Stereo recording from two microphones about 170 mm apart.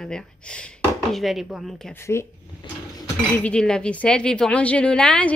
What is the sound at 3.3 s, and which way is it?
Speech, 5° left (ahead or behind).